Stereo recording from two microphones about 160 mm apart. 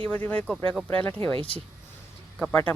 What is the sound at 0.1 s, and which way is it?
Speech, 10° left (ahead or behind).